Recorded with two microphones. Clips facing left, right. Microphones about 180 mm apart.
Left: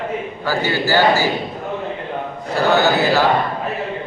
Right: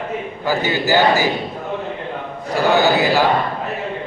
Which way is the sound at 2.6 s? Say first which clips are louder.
Even; 15° right (ahead or behind).